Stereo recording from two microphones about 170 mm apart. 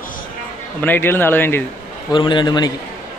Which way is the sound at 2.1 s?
25° left (ahead or behind).